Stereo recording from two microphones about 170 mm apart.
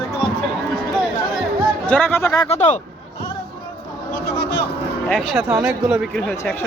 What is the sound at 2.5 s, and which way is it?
Speech, 45° left (ahead or behind).